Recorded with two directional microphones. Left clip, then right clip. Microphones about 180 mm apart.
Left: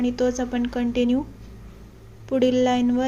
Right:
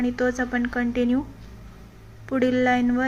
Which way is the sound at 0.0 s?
25° left (ahead or behind).